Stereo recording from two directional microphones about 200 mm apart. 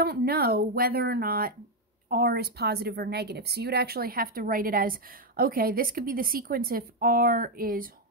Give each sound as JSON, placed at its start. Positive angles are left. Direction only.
{"t": 0.0, "sound": "a woman's voice", "side_deg": -50}